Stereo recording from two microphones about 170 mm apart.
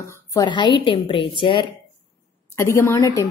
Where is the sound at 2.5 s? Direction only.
15° left (ahead or behind).